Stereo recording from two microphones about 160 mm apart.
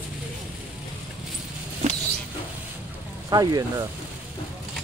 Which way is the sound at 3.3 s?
25° right (ahead or behind).